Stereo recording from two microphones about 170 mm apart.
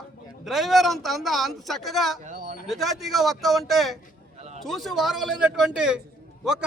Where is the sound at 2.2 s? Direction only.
50° right (ahead or behind).